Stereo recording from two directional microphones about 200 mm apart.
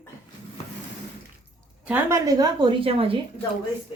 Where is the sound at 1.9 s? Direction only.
15° right (ahead or behind).